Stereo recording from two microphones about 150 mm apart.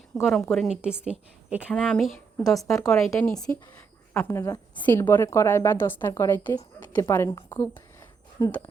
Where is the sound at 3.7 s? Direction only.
15° left (ahead or behind).